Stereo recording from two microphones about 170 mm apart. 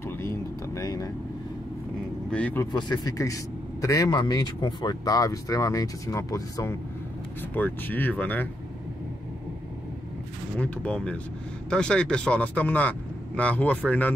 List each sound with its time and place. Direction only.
0.0 s vehicle: 15° left (ahead or behind)
2.3 s speech: 10° left (ahead or behind)
2.7 s speech: 25° left (ahead or behind)
10.6 s speech: 5° left (ahead or behind)